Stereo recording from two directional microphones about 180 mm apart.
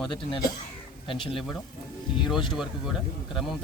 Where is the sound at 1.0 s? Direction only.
30° left (ahead or behind).